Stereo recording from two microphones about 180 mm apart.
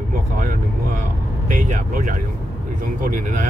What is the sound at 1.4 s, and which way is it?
Speech, 45° right (ahead or behind).